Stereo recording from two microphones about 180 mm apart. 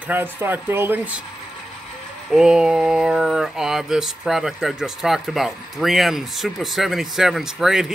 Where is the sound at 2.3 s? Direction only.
5° right (ahead or behind).